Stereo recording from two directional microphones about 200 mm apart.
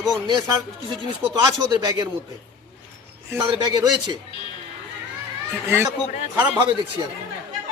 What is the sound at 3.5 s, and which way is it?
Speech, 20° right (ahead or behind).